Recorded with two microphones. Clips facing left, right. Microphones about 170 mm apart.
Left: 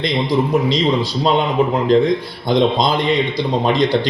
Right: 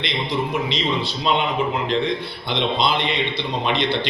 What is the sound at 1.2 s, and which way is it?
A man's voice, 40° left (ahead or behind).